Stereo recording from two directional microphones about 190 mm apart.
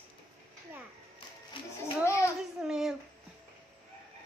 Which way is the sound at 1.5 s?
25° left (ahead or behind).